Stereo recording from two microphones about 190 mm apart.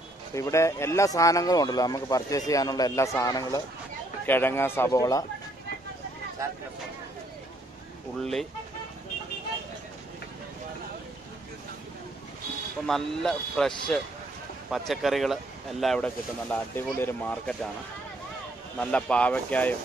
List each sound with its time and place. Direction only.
0.3 s speech: 15° left (ahead or behind)
8.2 s speech: centre (ahead or behind)
12.8 s speech: centre (ahead or behind)
18.8 s speech: 5° left (ahead or behind)